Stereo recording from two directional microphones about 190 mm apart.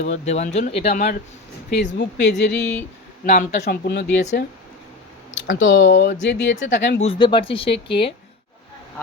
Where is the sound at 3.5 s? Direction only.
60° left (ahead or behind).